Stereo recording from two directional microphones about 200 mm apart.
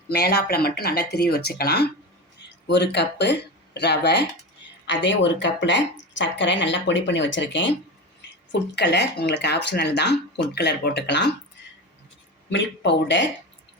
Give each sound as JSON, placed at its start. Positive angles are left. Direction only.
{"t": 0.1, "sound": "speech", "side_deg": 55}
{"t": 12.5, "sound": "speech", "side_deg": 60}